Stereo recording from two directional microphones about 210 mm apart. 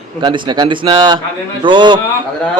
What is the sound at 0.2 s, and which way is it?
A man's voice, 20° right (ahead or behind).